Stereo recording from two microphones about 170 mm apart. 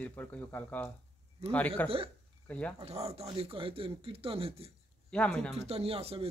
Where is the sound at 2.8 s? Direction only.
35° right (ahead or behind).